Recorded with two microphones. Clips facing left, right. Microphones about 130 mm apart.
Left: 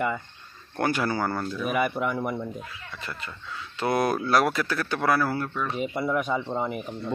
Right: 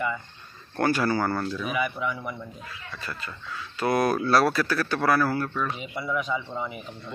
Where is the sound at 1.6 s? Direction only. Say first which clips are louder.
Left 6 dB; 50° left (ahead or behind).